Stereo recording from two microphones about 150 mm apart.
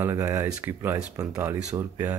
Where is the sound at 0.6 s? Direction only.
15° right (ahead or behind).